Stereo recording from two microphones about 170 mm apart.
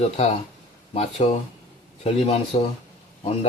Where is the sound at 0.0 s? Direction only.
40° left (ahead or behind).